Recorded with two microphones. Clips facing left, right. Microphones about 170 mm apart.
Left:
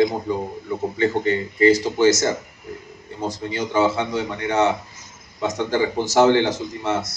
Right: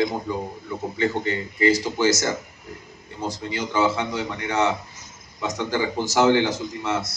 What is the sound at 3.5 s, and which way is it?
A man's voice, 25° left (ahead or behind).